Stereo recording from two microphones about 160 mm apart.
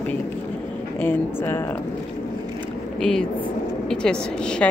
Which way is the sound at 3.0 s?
5° left (ahead or behind).